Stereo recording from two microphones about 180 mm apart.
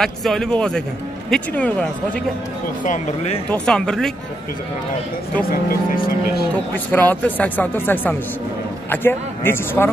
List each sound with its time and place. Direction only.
0.0 s speech: centre (ahead or behind)
2.8 s speech: 45° left (ahead or behind)
3.5 s speech: 5° left (ahead or behind)
5.5 s speech: 55° left (ahead or behind)
6.5 s speech: 10° left (ahead or behind)